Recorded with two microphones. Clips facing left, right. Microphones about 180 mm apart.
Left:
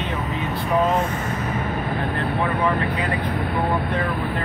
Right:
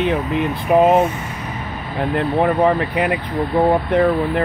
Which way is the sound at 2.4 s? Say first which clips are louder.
Right 7 dB; 60° right (ahead or behind).